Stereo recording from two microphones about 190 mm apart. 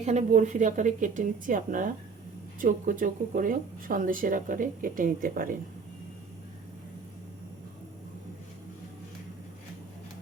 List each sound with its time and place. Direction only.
0.0 s speech: 35° right (ahead or behind)